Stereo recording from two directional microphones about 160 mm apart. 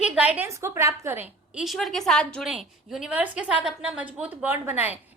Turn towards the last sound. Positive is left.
turn(degrees=-10)  # may be behind; listen again after turning